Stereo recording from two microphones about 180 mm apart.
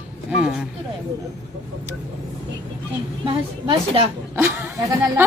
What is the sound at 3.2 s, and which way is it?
Speech, 30° right (ahead or behind).